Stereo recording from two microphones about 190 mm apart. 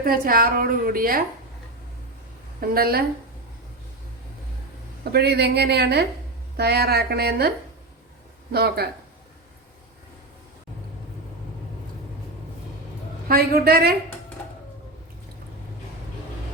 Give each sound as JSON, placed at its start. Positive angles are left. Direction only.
{"t": 0.0, "sound": "a woman's voice", "side_deg": -50}
{"t": 2.6, "sound": "a woman's voice", "side_deg": -55}
{"t": 5.1, "sound": "a woman's voice", "side_deg": -60}
{"t": 8.5, "sound": "a woman's voice", "side_deg": -55}
{"t": 13.2, "sound": "a woman's voice", "side_deg": -50}